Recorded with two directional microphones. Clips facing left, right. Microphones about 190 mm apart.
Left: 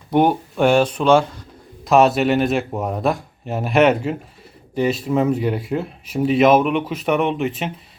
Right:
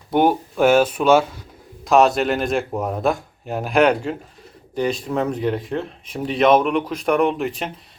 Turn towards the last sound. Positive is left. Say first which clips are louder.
# right 1 dB
turn(degrees=0)  # may be behind; listen again after turning